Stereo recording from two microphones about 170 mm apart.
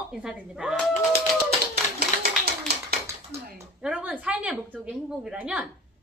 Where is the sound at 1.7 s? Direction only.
70° right (ahead or behind).